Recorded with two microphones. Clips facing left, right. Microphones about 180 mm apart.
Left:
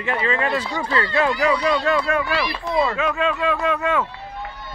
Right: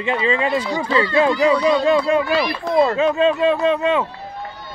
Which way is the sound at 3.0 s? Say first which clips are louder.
Right 6 dB; 30° right (ahead or behind).